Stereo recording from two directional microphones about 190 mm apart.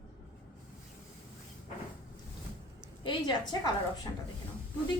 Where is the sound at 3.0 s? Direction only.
25° left (ahead or behind).